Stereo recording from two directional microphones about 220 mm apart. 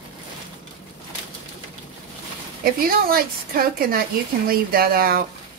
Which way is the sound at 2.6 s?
45° right (ahead or behind).